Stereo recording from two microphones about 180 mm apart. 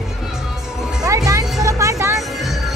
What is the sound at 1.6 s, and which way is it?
Vehicle, 15° right (ahead or behind).